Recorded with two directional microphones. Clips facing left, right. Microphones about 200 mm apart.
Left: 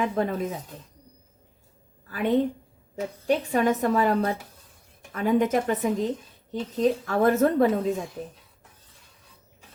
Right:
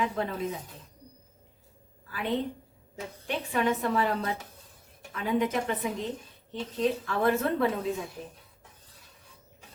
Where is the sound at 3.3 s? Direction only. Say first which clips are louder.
Left 6 dB; 45° left (ahead or behind).